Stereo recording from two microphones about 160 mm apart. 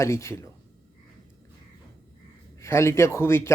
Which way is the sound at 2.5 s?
15° left (ahead or behind).